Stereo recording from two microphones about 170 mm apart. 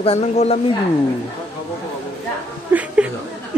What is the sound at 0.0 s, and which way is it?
Speech, 35° left (ahead or behind).